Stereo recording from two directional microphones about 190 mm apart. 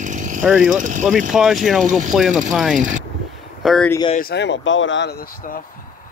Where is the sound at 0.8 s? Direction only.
40° right (ahead or behind).